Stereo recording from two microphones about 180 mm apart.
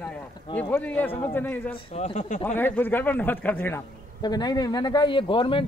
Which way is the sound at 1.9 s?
40° left (ahead or behind).